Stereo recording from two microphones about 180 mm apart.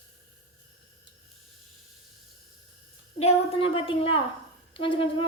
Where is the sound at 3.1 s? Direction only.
30° left (ahead or behind).